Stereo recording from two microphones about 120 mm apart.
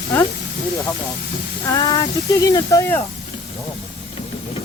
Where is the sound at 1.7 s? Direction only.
35° left (ahead or behind).